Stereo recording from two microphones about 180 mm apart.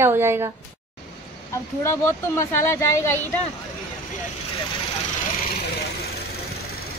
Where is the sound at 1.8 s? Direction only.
15° left (ahead or behind).